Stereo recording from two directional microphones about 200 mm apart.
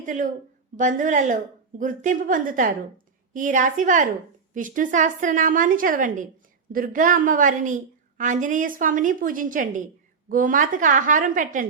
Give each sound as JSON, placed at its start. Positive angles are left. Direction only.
{"t": 0.0, "sound": "a woman's voice", "side_deg": -40}